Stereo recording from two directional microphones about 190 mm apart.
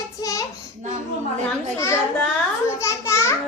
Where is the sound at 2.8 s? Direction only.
15° left (ahead or behind).